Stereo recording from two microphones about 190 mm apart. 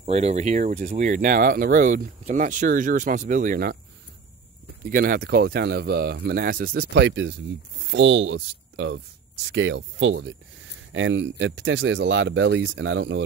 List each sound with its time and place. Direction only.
0.0 s speech: 35° right (ahead or behind)
4.8 s speech: 50° right (ahead or behind); by 13.2 s 75° right (ahead or behind)